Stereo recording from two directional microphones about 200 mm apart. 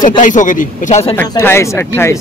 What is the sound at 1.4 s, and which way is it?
Speech, 10° left (ahead or behind).